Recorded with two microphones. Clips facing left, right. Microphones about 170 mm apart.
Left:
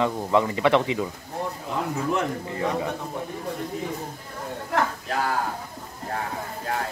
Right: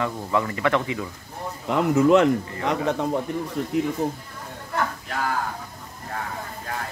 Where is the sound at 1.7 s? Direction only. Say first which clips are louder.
Right 10 dB; 85° right.